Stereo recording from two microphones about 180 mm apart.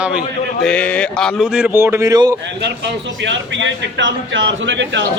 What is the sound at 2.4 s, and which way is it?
A man's voice, 75° right (ahead or behind).